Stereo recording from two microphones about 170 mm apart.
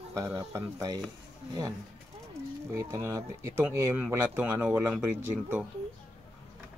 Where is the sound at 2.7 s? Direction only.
20° right (ahead or behind).